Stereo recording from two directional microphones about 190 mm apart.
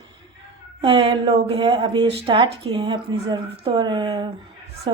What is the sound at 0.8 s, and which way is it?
Speech, 30° right (ahead or behind).